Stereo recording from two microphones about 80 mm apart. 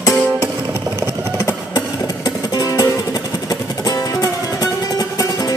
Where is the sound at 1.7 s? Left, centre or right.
Left.